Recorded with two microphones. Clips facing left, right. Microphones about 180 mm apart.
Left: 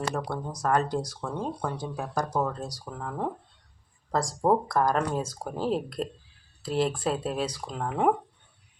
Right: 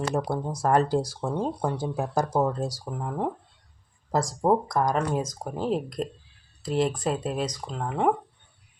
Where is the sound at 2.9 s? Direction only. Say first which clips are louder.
Even; 15° right (ahead or behind).